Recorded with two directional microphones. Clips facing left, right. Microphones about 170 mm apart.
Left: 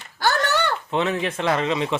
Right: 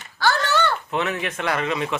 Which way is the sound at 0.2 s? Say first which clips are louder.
Right 1 dB; 15° left (ahead or behind).